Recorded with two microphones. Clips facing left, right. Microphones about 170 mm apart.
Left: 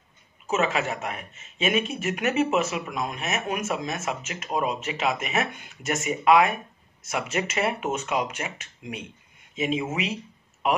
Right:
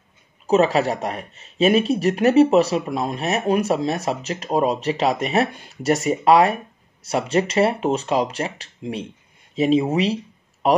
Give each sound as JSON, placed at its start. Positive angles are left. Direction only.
{"t": 0.5, "sound": "speech", "side_deg": -35}